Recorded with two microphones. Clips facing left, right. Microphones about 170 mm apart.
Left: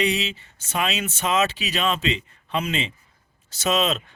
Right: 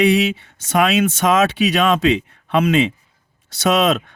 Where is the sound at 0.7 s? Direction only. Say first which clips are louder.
Right 9 dB; 75° right (ahead or behind).